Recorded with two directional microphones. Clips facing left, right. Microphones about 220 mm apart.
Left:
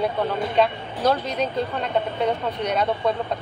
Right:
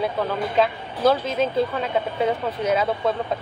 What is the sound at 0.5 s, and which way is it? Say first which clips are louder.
Speech: left 1 dB; centre (ahead or behind).